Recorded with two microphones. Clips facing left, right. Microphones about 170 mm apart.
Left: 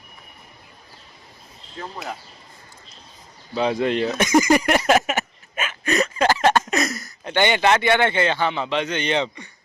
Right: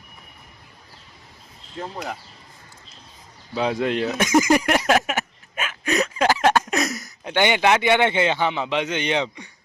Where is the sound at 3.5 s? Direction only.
5° right (ahead or behind).